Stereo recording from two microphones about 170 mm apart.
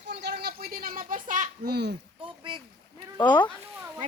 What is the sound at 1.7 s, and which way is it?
Speech, 70° right (ahead or behind).